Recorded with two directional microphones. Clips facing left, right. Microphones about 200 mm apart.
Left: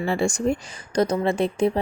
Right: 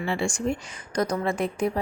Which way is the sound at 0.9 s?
25° left (ahead or behind).